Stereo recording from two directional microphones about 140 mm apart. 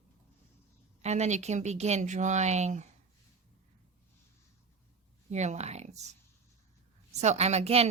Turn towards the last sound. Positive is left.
turn(degrees=-45)  # may be behind; listen again after turning